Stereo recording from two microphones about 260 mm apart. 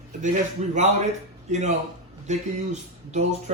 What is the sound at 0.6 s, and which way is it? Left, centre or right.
Speech, right.